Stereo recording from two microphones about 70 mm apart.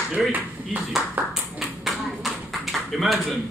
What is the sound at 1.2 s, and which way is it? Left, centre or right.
Ping, right.